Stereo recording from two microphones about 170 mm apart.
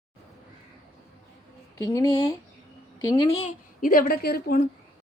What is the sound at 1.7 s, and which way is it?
Speech, 20° left (ahead or behind).